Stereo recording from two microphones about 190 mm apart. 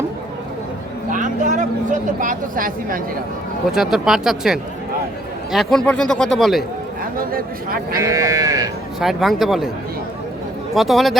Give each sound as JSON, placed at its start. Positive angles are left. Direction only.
{"t": 1.1, "sound": "speech", "side_deg": -40}
{"t": 3.7, "sound": "speech", "side_deg": 0}
{"t": 7.3, "sound": "speech", "side_deg": -50}
{"t": 8.0, "sound": "speech", "side_deg": -15}
{"t": 9.0, "sound": "speech", "side_deg": 0}
{"t": 10.8, "sound": "speech", "side_deg": 0}